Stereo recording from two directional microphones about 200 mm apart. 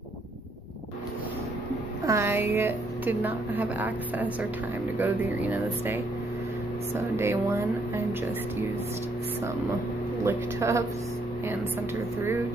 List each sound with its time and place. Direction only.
2.0 s speech: 15° right (ahead or behind)
7.2 s speech: 15° right (ahead or behind)
10.2 s speech: 15° right (ahead or behind)